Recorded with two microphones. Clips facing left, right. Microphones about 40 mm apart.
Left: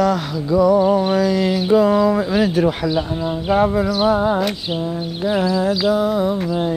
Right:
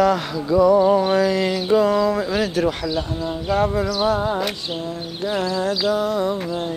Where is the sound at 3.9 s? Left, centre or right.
Centre.